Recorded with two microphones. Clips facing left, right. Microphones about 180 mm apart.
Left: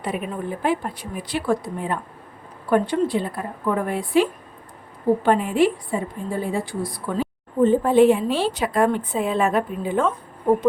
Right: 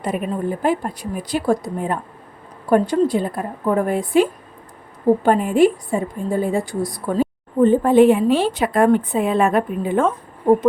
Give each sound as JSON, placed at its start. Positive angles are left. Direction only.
{"t": 0.0, "sound": "a woman's voice", "side_deg": -45}